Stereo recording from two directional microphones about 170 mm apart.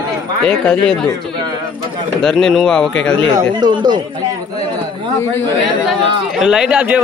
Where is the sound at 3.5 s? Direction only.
25° right (ahead or behind).